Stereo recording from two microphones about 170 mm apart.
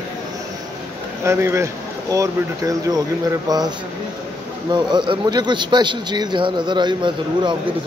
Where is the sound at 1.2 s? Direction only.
15° right (ahead or behind).